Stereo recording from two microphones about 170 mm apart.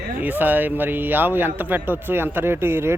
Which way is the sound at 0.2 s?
10° right (ahead or behind).